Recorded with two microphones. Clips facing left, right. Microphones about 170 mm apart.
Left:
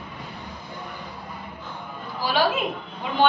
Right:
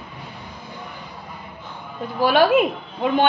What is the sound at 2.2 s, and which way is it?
Speech, 60° right (ahead or behind).